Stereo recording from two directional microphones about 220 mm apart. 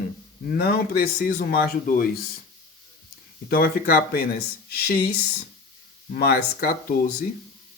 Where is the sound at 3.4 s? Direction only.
45° left (ahead or behind).